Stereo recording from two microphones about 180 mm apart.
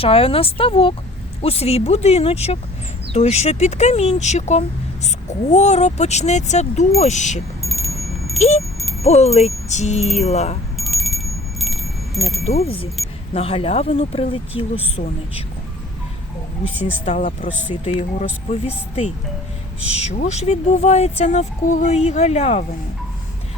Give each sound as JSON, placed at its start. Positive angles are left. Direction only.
{"t": 0.0, "sound": "speech", "side_deg": 30}
{"t": 7.6, "sound": "wind chime", "side_deg": 0}
{"t": 8.4, "sound": "speech", "side_deg": 40}
{"t": 10.8, "sound": "a sound", "side_deg": 0}
{"t": 13.3, "sound": "speech", "side_deg": 35}
{"t": 17.1, "sound": "speech", "side_deg": 40}
{"t": 20.1, "sound": "speech", "side_deg": 40}